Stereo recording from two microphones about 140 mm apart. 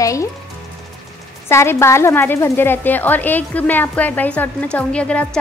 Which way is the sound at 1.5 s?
20° left (ahead or behind).